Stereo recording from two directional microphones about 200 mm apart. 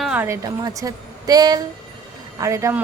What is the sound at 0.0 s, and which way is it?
A woman's voice, 10° right (ahead or behind).